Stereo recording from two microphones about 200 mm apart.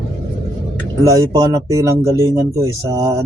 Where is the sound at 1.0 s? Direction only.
15° right (ahead or behind).